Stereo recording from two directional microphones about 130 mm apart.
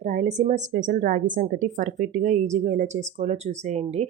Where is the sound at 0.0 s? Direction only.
65° right (ahead or behind).